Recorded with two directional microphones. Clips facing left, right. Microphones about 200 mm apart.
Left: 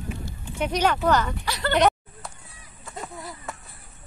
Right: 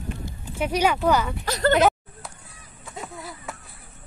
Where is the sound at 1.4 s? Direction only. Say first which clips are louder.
Right 6 dB; 45° right (ahead or behind).